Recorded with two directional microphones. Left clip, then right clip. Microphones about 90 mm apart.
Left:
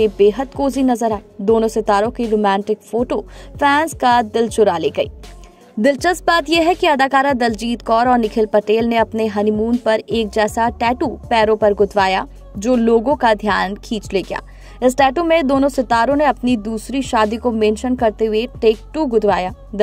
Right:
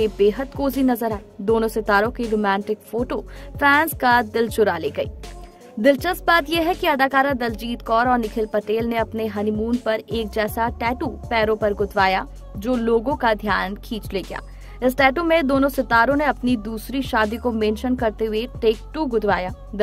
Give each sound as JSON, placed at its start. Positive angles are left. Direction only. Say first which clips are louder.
{"t": 0.0, "sound": "a woman's voice", "louder": "left 5 dB", "side_deg": 30}
{"t": 5.8, "sound": "a woman's voice", "louder": "left 3 dB", "side_deg": 45}